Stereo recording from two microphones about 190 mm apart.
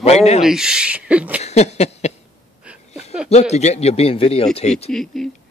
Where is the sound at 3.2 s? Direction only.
35° left (ahead or behind).